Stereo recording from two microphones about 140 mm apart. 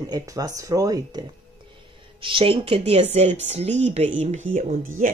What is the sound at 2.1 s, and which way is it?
A woman's voice, 40° right (ahead or behind).